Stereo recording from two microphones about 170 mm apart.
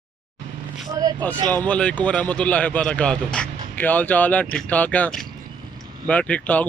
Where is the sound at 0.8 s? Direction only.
20° right (ahead or behind).